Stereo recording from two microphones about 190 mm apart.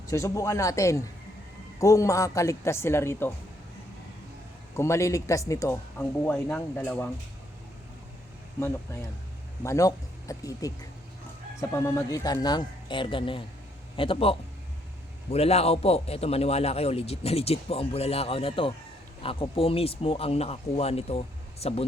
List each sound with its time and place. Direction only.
0.1 s speech: 15° left (ahead or behind)
4.8 s speech: 15° left (ahead or behind)
8.6 s speech: 15° left (ahead or behind)
11.7 s a man's voice: 15° left (ahead or behind); by 21.8 s 30° left (ahead or behind)